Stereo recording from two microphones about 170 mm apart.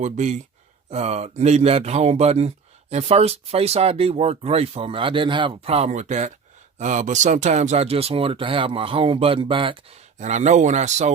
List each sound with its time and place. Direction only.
0.0 s speech: 45° right (ahead or behind)
10.2 s speech: 45° right (ahead or behind)